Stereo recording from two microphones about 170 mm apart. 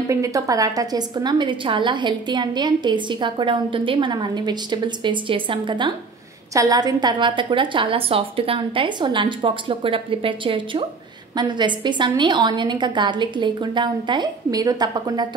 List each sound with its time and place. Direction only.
0.1 s a woman's voice: 20° right (ahead or behind)